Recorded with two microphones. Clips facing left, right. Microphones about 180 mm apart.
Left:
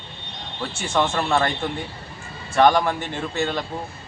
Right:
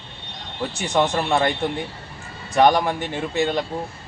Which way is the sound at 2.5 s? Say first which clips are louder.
Even; 15° right (ahead or behind).